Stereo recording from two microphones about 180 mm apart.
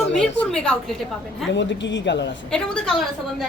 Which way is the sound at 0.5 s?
5° left (ahead or behind).